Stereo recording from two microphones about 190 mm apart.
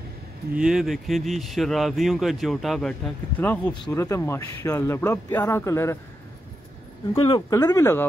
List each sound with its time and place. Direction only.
0.6 s speech: 5° right (ahead or behind); by 5.9 s 15° left (ahead or behind)
7.2 s speech: 25° left (ahead or behind)